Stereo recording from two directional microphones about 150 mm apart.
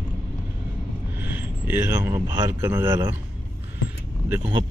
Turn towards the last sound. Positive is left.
turn(degrees=-35)  # may be behind; listen again after turning